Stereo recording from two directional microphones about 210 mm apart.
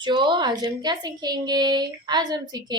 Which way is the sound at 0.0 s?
20° right (ahead or behind).